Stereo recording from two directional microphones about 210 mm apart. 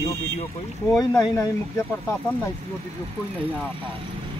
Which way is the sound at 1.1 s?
15° left (ahead or behind).